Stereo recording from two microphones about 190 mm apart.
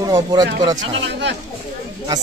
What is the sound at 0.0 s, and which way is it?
Speech, 20° right (ahead or behind).